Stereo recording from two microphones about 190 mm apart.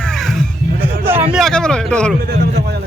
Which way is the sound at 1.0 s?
10° right (ahead or behind).